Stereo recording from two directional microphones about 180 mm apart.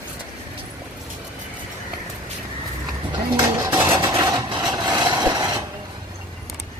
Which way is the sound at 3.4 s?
10° right (ahead or behind).